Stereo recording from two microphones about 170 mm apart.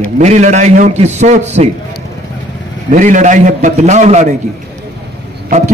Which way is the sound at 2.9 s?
50° right (ahead or behind).